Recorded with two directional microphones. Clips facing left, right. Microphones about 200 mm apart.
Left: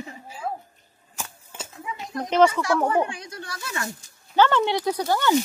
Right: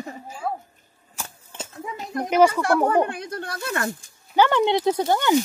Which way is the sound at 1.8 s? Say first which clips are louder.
Right 3 dB; 50° right (ahead or behind).